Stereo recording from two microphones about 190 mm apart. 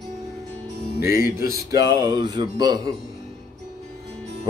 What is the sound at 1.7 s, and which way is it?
Music, 20° right (ahead or behind).